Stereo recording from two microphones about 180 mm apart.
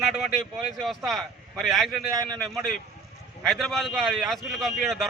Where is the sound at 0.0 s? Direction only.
Centre (ahead or behind).